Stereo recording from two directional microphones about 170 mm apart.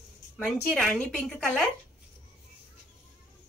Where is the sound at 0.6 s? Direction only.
Centre (ahead or behind).